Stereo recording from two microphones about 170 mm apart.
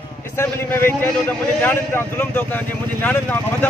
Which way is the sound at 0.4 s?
15° left (ahead or behind).